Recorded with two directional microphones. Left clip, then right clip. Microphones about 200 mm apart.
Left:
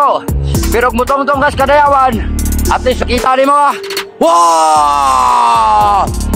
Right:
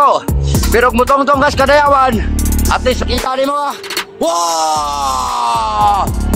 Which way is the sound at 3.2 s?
45° left (ahead or behind).